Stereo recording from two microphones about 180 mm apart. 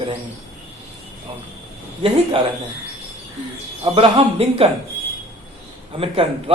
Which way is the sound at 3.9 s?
30° right (ahead or behind).